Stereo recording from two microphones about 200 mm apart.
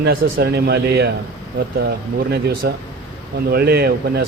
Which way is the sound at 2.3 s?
55° right (ahead or behind).